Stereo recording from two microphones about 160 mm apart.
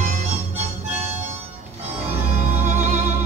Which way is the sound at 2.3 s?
50° right (ahead or behind).